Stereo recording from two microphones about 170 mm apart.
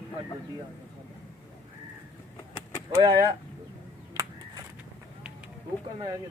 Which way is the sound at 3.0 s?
25° right (ahead or behind).